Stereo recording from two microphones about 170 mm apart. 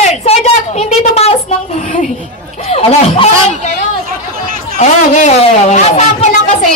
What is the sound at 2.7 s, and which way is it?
Speech, 35° left (ahead or behind).